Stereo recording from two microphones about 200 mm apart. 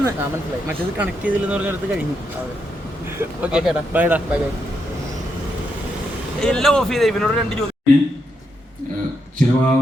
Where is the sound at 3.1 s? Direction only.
5° right (ahead or behind).